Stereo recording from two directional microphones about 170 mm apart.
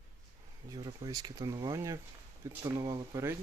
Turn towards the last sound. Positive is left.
turn(degrees=-20)  # may be behind; listen again after turning